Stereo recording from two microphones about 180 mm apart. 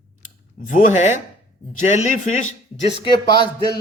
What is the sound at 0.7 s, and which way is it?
Speech, 45° left (ahead or behind).